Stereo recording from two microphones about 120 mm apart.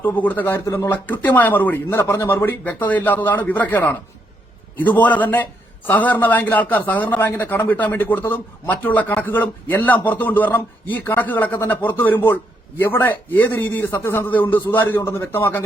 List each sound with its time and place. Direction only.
0.0 s a man's voice: 15° left (ahead or behind)